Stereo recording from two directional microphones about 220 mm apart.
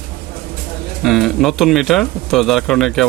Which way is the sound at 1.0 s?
Centre (ahead or behind).